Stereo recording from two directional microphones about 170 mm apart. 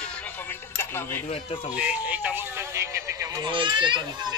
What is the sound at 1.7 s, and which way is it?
Speech, 10° right (ahead or behind).